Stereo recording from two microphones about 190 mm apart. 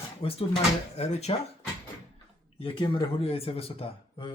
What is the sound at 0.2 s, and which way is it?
Speech, 30° left (ahead or behind).